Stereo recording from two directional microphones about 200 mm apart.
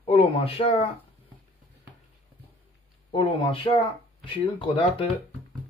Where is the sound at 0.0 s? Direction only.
30° left (ahead or behind).